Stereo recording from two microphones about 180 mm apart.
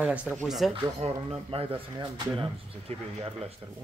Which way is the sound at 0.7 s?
30° right (ahead or behind).